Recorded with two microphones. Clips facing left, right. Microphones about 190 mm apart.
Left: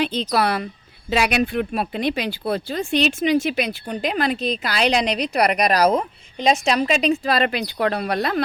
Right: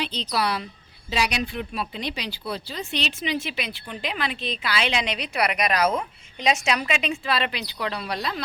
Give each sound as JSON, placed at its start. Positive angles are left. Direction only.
{"t": 0.0, "sound": "speech", "side_deg": 50}